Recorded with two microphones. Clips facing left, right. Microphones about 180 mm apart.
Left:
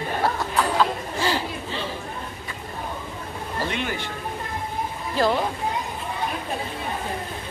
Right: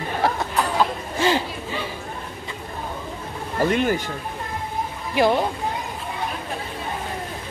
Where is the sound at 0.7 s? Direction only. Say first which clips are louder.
Right 1 dB; 15° right (ahead or behind).